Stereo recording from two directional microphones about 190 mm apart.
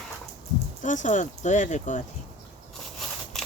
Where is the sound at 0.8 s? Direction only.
40° left (ahead or behind).